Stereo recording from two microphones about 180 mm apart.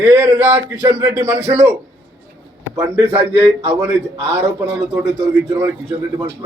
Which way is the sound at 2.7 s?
10° right (ahead or behind).